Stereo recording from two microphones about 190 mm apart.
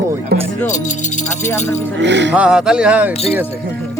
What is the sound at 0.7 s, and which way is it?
Speech, 40° left (ahead or behind).